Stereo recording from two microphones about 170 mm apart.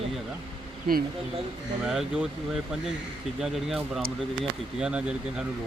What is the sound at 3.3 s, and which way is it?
Speech, centre (ahead or behind).